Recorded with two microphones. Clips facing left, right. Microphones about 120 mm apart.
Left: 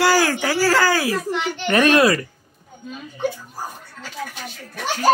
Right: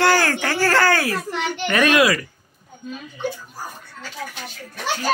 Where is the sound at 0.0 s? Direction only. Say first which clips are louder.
Left 1 dB; 10° left (ahead or behind).